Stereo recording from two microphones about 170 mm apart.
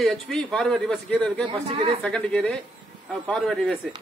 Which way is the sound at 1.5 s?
30° right (ahead or behind).